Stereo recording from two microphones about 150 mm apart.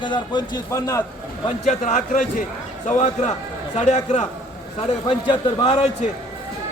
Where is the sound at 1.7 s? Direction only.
55° left (ahead or behind).